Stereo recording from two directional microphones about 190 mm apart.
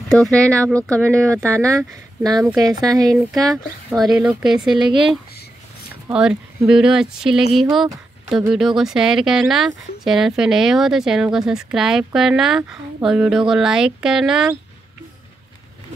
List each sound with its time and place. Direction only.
0.1 s speech: 5° left (ahead or behind)
1.0 s speech: 15° right (ahead or behind)
3.2 s speech: centre (ahead or behind)
6.0 s speech: 10° right (ahead or behind)